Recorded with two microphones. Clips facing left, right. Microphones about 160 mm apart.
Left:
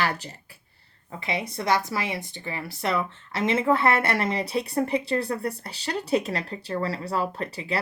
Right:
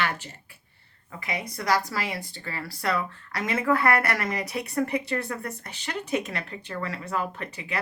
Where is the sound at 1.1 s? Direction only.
25° left (ahead or behind).